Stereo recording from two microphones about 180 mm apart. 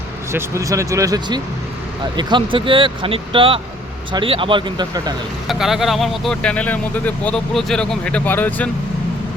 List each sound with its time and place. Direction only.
0.3 s speech: 15° right (ahead or behind)
5.5 s speech: centre (ahead or behind)